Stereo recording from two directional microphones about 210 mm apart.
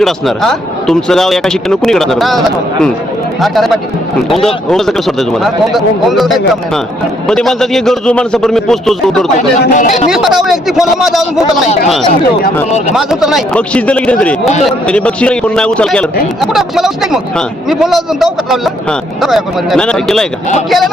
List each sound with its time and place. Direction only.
0.0 s speech: centre (ahead or behind)
3.4 s speech: centre (ahead or behind)
9.7 s speech: 40° left (ahead or behind)
10.1 s speech: centre (ahead or behind)
12.9 s speech: centre (ahead or behind)